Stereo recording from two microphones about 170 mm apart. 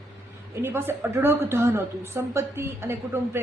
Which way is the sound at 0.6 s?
15° right (ahead or behind).